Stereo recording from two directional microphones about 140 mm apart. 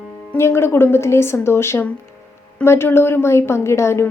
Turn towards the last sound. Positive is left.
turn(degrees=20)  # may be behind; listen again after turning